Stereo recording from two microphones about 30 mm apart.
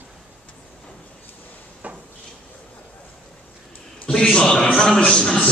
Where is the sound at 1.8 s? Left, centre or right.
Right.